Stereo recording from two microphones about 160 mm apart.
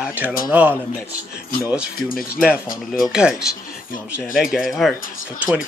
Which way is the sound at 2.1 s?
65° left (ahead or behind).